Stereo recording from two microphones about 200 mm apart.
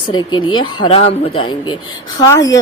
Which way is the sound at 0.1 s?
20° left (ahead or behind).